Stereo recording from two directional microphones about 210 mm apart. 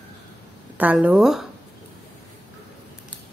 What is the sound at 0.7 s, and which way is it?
Speech, 5° right (ahead or behind).